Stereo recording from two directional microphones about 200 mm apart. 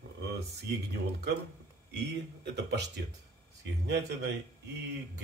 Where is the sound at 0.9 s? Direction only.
55° right (ahead or behind).